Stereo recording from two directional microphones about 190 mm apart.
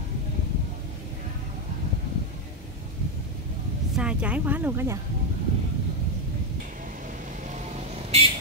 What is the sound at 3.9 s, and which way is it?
Speech, 5° right (ahead or behind).